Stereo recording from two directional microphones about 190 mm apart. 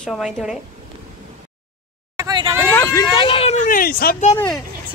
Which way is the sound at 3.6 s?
45° left (ahead or behind).